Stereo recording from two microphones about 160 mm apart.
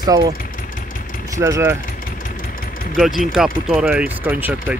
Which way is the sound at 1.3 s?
20° right (ahead or behind).